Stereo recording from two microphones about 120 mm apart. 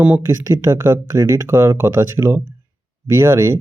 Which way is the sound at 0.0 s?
15° right (ahead or behind).